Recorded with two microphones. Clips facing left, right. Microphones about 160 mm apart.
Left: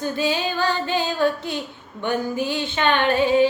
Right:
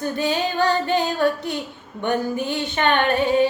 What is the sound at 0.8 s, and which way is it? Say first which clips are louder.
Female singing: right 1 dB; 55° right (ahead or behind).